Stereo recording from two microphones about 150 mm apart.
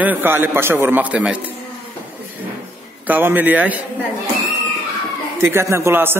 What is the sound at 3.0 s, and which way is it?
Speech, 10° right (ahead or behind).